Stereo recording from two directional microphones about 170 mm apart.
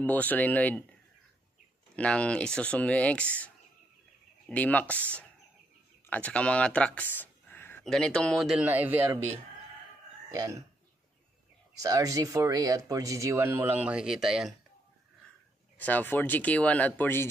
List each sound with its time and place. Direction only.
0.0 s speech: 10° left (ahead or behind)
2.0 s speech: 5° left (ahead or behind); by 9.2 s 10° right (ahead or behind)
10.3 s speech: 20° right (ahead or behind)
11.8 s speech: 20° right (ahead or behind); by 14.5 s centre (ahead or behind)
15.8 s speech: 10° left (ahead or behind)